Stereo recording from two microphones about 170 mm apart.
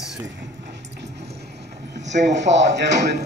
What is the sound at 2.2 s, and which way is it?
Speech, 90° right.